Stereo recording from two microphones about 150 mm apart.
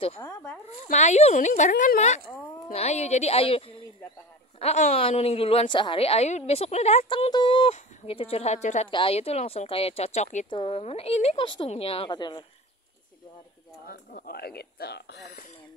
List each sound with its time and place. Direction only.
0.3 s speech: 20° left (ahead or behind)
0.9 s a woman's voice: 50° left (ahead or behind); by 2.0 s 65° left (ahead or behind)
2.0 s a woman's voice: 50° left (ahead or behind)
7.1 s a woman's voice: 30° left (ahead or behind)
13.8 s speech: 85° left